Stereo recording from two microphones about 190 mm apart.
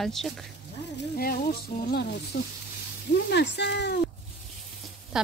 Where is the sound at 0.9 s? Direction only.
50° left (ahead or behind).